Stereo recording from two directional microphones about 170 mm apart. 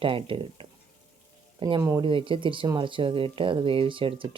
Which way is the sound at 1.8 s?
15° right (ahead or behind).